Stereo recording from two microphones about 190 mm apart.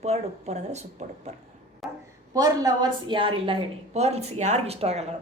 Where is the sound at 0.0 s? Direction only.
35° right (ahead or behind).